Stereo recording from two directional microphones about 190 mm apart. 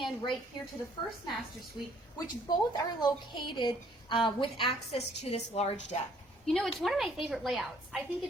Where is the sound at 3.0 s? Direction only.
25° left (ahead or behind).